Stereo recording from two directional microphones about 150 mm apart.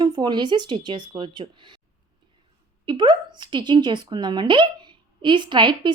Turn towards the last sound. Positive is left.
turn(degrees=-30)  # may be behind; listen again after turning